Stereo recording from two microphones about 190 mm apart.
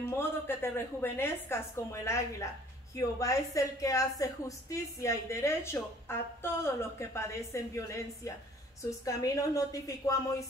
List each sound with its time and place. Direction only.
0.1 s a woman's voice: 15° left (ahead or behind)